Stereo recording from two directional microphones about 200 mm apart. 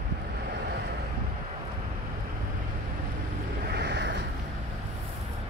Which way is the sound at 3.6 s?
55° right (ahead or behind).